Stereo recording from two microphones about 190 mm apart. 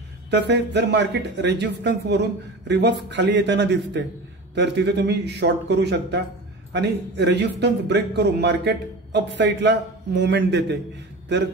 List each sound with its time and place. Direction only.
0.3 s a man's voice: 65° right (ahead or behind)